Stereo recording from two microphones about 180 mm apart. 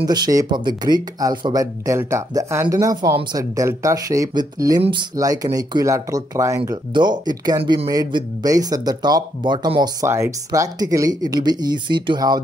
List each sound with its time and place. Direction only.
0.0 s speech: 20° right (ahead or behind)